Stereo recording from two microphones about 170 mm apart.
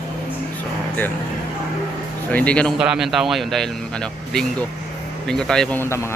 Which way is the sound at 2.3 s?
5° left (ahead or behind).